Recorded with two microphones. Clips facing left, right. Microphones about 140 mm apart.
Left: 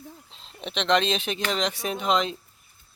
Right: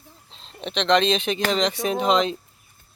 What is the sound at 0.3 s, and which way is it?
Speech, 5° left (ahead or behind).